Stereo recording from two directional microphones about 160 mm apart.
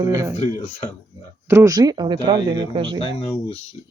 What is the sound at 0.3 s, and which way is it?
Speech, 40° left (ahead or behind).